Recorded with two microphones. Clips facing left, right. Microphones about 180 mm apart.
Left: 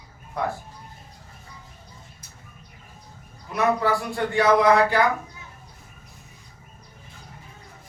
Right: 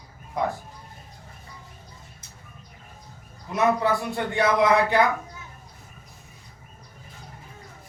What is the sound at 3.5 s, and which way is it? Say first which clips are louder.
Speech: even; 20° right (ahead or behind).